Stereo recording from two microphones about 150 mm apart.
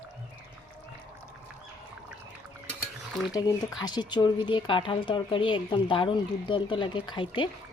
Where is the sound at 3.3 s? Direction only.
25° left (ahead or behind).